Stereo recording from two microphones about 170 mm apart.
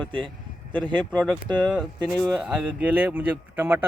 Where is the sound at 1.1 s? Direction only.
5° left (ahead or behind).